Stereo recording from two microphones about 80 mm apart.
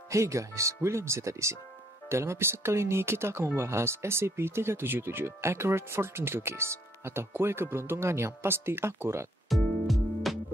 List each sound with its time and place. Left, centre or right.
0.1 s speech: right
9.5 s music: centre